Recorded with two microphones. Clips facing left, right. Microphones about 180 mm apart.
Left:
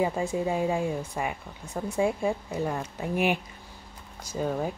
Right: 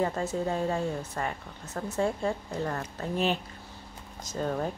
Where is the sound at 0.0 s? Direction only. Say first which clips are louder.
Left 2 dB; 10° left (ahead or behind).